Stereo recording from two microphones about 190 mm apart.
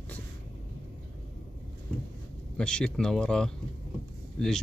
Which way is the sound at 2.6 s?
5° left (ahead or behind).